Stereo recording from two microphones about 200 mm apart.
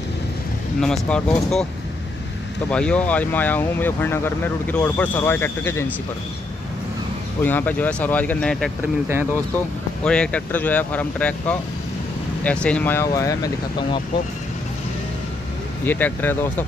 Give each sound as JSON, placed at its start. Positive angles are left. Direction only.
{"t": 0.7, "sound": "speech", "side_deg": 5}
{"t": 2.7, "sound": "speech", "side_deg": 5}
{"t": 7.4, "sound": "speech", "side_deg": 10}
{"t": 10.0, "sound": "speech", "side_deg": 5}
{"t": 15.8, "sound": "speech", "side_deg": 10}